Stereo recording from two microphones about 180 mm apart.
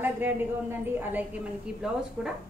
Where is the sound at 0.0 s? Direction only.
10° right (ahead or behind).